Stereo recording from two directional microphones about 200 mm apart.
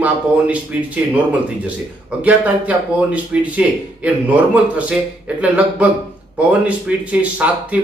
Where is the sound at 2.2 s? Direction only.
5° right (ahead or behind).